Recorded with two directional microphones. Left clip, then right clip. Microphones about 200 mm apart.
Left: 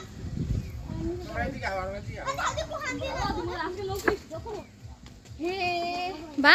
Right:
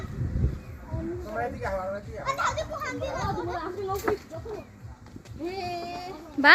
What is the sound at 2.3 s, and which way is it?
A child's voice, 35° left (ahead or behind).